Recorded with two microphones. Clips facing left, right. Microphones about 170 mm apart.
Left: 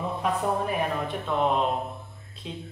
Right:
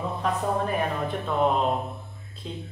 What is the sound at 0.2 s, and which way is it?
A man's voice, centre (ahead or behind).